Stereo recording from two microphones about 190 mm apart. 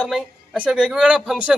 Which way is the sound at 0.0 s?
5° right (ahead or behind).